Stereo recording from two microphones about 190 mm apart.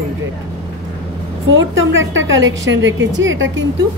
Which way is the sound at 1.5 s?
85° right.